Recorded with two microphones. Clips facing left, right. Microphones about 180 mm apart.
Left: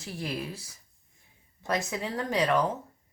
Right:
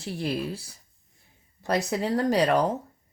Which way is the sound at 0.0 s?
30° right (ahead or behind).